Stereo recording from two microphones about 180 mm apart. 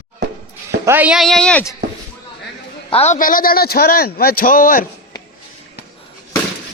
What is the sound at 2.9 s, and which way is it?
A man's voice, 40° left (ahead or behind).